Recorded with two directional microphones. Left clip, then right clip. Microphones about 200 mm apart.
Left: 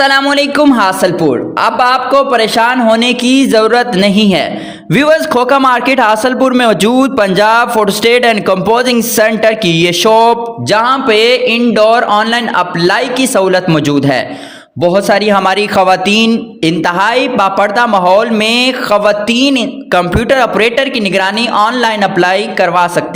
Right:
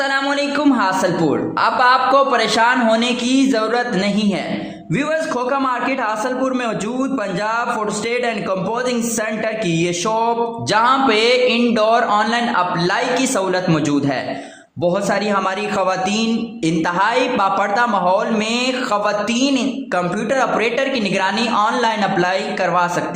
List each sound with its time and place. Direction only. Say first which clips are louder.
0.0 s a man's voice: left 9 dB; 45° left (ahead or behind)